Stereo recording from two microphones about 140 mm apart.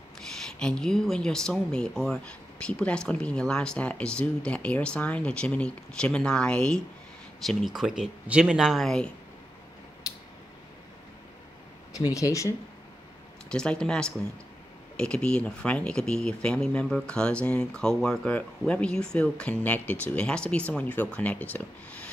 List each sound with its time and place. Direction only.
0.5 s speech: 5° left (ahead or behind)
12.0 s speech: 25° left (ahead or behind)
13.5 s speech: 5° left (ahead or behind)